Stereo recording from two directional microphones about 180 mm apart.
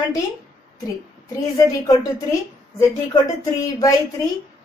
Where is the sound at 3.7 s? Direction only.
20° left (ahead or behind).